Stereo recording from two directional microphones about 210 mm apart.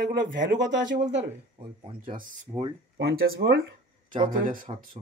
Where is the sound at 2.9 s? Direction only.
45° right (ahead or behind).